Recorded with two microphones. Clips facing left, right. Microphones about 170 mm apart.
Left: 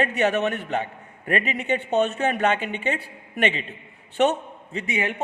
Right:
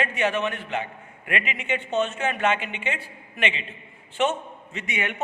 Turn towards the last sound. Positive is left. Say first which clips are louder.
# left 4 dB
turn(degrees=30)  # may be behind; listen again after turning